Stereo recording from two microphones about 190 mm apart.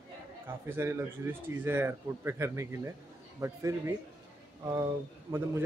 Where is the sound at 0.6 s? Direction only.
10° right (ahead or behind).